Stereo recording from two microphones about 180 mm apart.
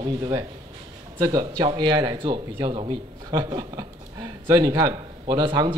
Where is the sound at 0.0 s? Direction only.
20° right (ahead or behind).